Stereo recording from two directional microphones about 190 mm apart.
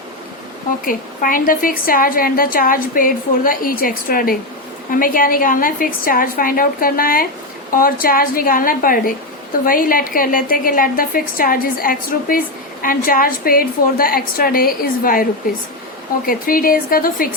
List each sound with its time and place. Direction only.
0.9 s a woman's voice: 45° left (ahead or behind)